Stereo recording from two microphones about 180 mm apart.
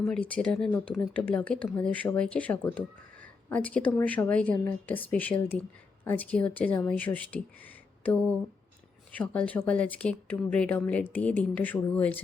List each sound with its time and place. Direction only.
0.0 s speech: 5° left (ahead or behind)